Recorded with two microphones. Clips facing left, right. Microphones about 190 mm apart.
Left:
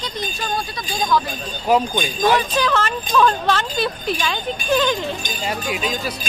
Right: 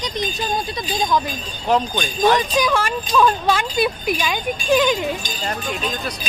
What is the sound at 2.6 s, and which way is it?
Speech, 10° right (ahead or behind).